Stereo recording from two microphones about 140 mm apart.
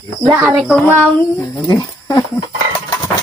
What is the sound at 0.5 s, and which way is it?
Child singing, centre (ahead or behind).